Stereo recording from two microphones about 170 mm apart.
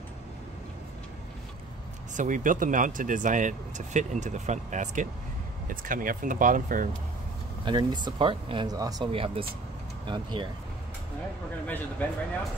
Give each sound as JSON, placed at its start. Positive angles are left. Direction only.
{"t": 2.1, "sound": "speech", "side_deg": -50}
{"t": 7.6, "sound": "speech", "side_deg": -25}
{"t": 11.6, "sound": "speech", "side_deg": 10}